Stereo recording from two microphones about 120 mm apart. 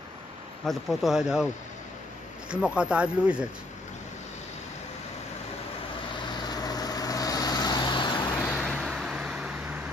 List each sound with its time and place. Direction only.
0.7 s speech: centre (ahead or behind)
2.5 s speech: 10° right (ahead or behind)
6.4 s vehicle: 35° left (ahead or behind)
8.4 s vehicle: 10° left (ahead or behind)